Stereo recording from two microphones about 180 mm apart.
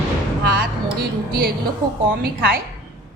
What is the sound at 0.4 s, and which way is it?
Music, 60° right (ahead or behind).